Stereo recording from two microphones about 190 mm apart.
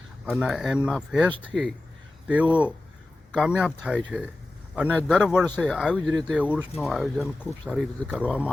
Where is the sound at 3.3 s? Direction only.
5° right (ahead or behind).